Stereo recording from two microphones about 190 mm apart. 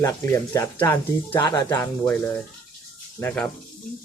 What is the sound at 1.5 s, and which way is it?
Speech, 20° left (ahead or behind).